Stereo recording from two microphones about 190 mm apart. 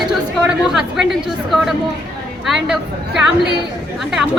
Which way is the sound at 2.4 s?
Centre (ahead or behind).